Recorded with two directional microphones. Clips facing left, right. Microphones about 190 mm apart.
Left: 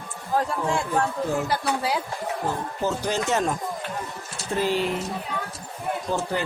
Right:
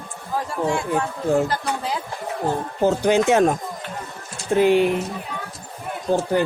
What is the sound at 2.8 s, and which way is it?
Speech, 55° right (ahead or behind).